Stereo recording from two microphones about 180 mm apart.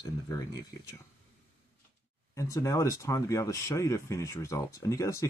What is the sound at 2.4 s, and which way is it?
Speech, 15° left (ahead or behind).